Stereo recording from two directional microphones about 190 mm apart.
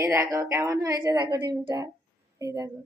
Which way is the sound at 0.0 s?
15° right (ahead or behind).